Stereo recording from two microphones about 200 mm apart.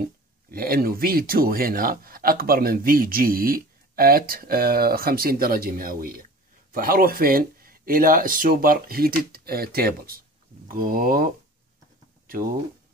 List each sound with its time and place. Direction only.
0.5 s speech: 50° right (ahead or behind)